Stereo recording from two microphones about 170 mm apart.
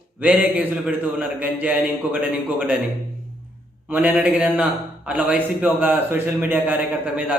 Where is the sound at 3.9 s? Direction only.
10° right (ahead or behind).